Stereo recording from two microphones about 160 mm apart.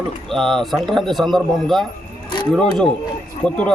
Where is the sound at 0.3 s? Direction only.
Centre (ahead or behind).